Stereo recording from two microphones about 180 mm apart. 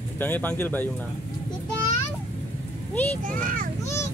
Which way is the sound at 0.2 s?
10° left (ahead or behind).